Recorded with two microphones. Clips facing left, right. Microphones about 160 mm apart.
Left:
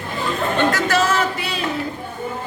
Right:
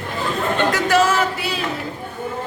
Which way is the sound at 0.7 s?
15° right (ahead or behind).